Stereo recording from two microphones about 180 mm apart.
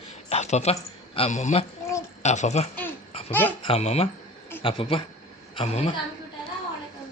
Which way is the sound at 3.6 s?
35° left (ahead or behind).